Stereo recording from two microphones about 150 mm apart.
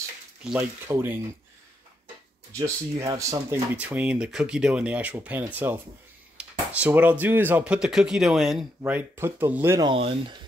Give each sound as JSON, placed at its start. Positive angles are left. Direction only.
{"t": 0.4, "sound": "speech", "side_deg": -5}
{"t": 0.8, "sound": "speech", "side_deg": -15}
{"t": 2.5, "sound": "speech", "side_deg": -20}
{"t": 3.7, "sound": "speech", "side_deg": -10}
{"t": 9.8, "sound": "speech", "side_deg": -40}